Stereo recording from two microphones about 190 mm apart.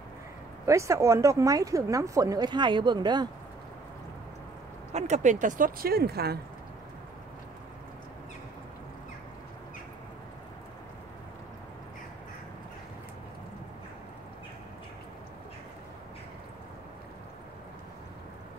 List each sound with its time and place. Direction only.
0.7 s a woman's voice: 15° right (ahead or behind)
4.9 s speech: 35° right (ahead or behind); by 6.3 s 55° right (ahead or behind)